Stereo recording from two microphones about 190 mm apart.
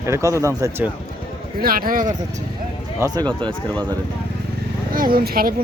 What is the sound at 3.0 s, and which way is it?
Speech, 20° right (ahead or behind).